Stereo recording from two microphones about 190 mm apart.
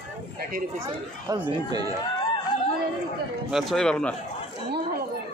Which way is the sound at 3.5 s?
Centre (ahead or behind).